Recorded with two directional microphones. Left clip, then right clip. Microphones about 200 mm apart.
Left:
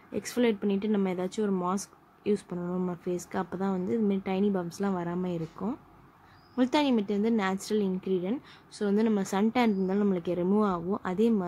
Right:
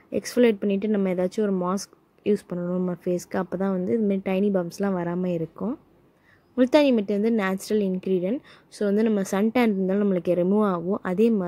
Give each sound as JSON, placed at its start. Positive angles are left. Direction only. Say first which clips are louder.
{"t": 0.1, "sound": "speech", "louder": "right 7 dB", "side_deg": -20}